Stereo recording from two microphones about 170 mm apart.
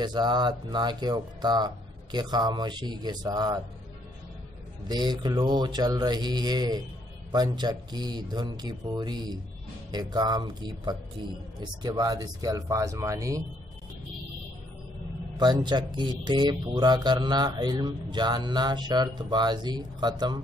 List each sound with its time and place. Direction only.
0.0 s speech: 25° right (ahead or behind)
4.8 s speech: 25° right (ahead or behind)
15.3 s speech: 25° right (ahead or behind)